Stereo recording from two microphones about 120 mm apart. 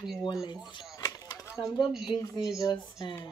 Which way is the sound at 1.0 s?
30° left (ahead or behind).